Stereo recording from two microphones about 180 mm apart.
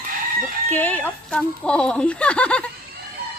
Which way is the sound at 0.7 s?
10° left (ahead or behind).